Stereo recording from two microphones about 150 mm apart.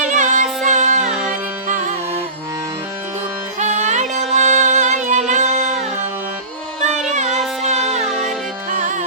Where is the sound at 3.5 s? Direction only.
50° right (ahead or behind).